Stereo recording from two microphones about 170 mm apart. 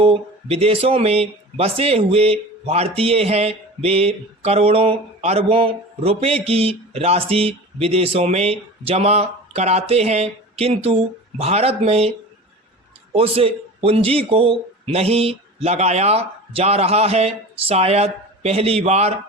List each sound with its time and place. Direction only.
0.0 s speech: 35° right (ahead or behind)
13.1 s speech: 35° right (ahead or behind)